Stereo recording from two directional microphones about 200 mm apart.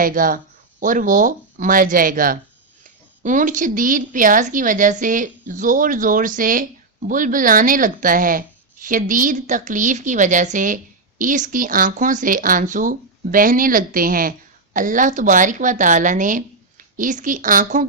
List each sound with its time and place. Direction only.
0.0 s speech: 45° right (ahead or behind)